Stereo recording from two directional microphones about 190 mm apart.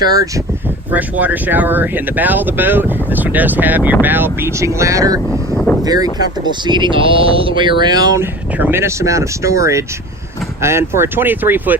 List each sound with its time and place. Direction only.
0.0 s speech: 20° right (ahead or behind)